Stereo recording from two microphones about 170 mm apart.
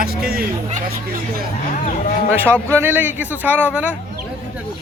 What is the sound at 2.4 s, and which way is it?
A man's voice, 15° right (ahead or behind).